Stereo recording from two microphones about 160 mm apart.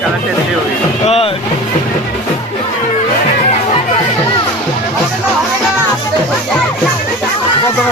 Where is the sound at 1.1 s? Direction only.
35° left (ahead or behind).